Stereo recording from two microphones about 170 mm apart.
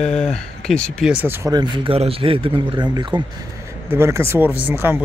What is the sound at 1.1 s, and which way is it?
Speech, 15° right (ahead or behind).